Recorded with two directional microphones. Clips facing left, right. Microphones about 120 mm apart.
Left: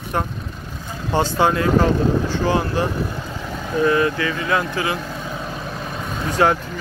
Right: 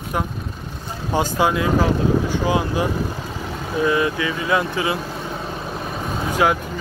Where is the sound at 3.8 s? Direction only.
15° right (ahead or behind).